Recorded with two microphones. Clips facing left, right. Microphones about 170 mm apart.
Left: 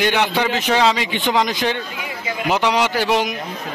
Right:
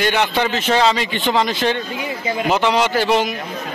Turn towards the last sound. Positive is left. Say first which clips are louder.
# right 2 dB
turn(degrees=15)  # may be behind; listen again after turning